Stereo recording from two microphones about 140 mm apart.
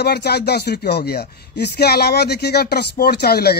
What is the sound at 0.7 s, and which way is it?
Speech, 90° left.